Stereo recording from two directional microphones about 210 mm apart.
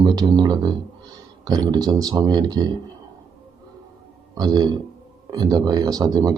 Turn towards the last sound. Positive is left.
turn(degrees=-15)  # may be behind; listen again after turning